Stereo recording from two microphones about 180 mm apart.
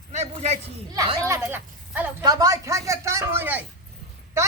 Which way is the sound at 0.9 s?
20° right (ahead or behind).